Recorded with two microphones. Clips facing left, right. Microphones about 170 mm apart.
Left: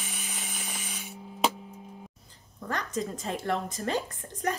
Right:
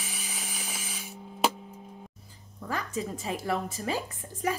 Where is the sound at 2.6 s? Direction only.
5° right (ahead or behind).